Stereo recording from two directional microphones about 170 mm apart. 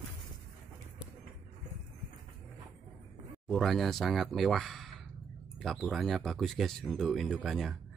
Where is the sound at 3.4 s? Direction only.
Centre (ahead or behind).